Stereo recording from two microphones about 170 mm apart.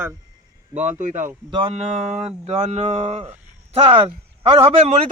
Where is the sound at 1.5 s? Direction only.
30° right (ahead or behind).